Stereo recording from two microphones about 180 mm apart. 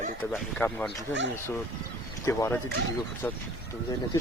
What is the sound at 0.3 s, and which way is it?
Speech, 10° left (ahead or behind).